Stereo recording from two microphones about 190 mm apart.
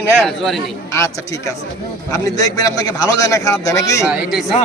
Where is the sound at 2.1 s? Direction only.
20° left (ahead or behind).